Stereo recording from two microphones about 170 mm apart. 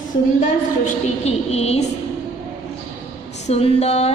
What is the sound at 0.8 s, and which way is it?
Speech, 40° left (ahead or behind).